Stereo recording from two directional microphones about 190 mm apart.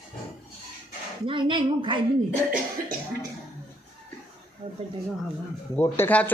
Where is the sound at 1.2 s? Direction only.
25° right (ahead or behind).